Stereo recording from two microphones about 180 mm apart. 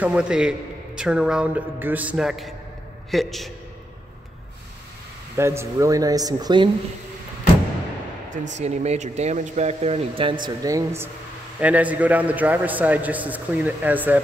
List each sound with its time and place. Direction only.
0.0 s a man's voice: 5° right (ahead or behind)
5.3 s speech: 15° right (ahead or behind)
8.5 s speech: 40° right (ahead or behind)
10.4 s a man's voice: 20° right (ahead or behind)